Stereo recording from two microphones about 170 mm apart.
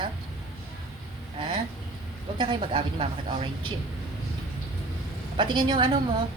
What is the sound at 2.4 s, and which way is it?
Speech, 30° right (ahead or behind).